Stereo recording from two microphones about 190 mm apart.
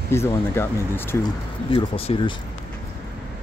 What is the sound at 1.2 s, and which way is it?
Speech, 25° left (ahead or behind).